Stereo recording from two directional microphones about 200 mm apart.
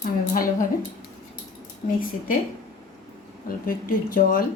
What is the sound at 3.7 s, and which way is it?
Speech, 45° left (ahead or behind).